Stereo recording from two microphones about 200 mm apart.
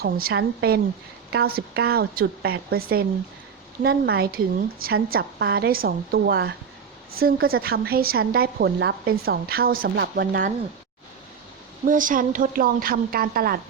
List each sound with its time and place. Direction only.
0.0 s a woman's voice: 50° right (ahead or behind)
11.9 s a woman's voice: 40° right (ahead or behind)